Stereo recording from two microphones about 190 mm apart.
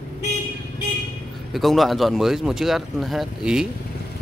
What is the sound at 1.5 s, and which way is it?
Speech, centre (ahead or behind).